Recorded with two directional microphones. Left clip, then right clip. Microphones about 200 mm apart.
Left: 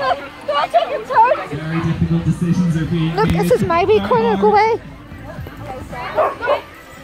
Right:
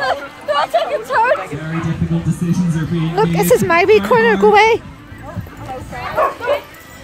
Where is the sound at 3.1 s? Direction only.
30° right (ahead or behind).